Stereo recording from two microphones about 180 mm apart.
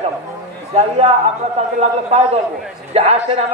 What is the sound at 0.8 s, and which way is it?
A man's voice, 35° right (ahead or behind).